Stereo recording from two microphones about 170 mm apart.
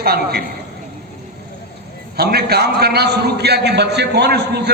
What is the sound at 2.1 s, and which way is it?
A man's voice, 70° right (ahead or behind).